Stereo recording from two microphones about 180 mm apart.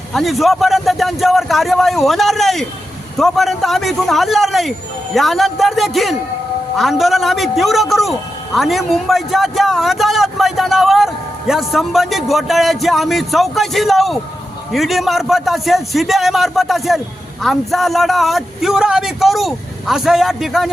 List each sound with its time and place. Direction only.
0.1 s a man's voice: centre (ahead or behind)